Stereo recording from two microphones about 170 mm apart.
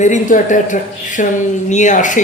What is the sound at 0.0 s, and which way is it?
Speech, 45° left (ahead or behind).